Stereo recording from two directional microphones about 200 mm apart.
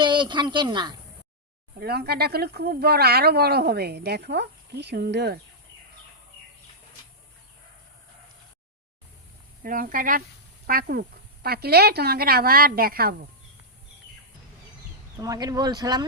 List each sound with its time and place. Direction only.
0.0 s speech: 25° right (ahead or behind)
1.8 s speech: 55° right (ahead or behind)
9.6 s speech: 45° right (ahead or behind)
15.2 s speech: 15° right (ahead or behind)